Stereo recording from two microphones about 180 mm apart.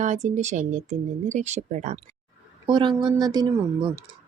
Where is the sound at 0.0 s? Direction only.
40° right (ahead or behind).